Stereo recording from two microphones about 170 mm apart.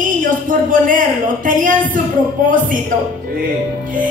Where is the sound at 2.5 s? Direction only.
50° right (ahead or behind).